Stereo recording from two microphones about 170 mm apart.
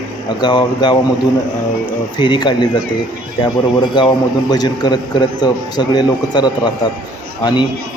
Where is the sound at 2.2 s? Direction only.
25° left (ahead or behind).